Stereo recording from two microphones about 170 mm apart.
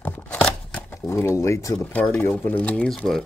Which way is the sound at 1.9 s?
5° left (ahead or behind).